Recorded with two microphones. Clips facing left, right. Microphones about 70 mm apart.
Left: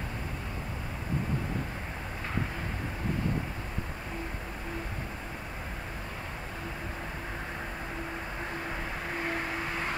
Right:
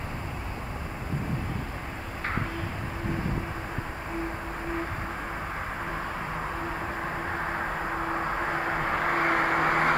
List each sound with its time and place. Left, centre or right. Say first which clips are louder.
7.5 s vehicle: right 8 dB; right